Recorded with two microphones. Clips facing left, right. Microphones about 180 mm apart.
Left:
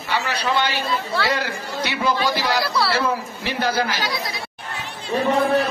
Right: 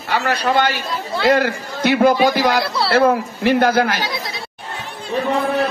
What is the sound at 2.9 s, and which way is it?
A man's voice, 55° right (ahead or behind).